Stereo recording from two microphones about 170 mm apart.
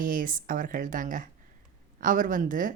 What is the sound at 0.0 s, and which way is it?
Speech, 55° right (ahead or behind).